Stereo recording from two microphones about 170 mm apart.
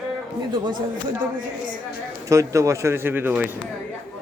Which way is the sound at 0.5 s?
25° right (ahead or behind).